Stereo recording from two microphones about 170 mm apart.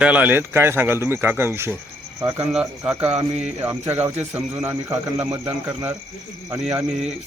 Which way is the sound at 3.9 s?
40° right (ahead or behind).